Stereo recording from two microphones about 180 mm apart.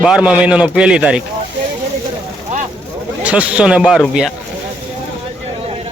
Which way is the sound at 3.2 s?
5° right (ahead or behind).